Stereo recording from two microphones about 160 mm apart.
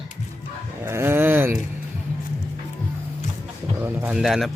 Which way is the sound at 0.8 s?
15° right (ahead or behind).